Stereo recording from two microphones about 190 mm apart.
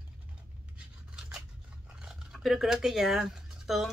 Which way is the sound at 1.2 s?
5° right (ahead or behind).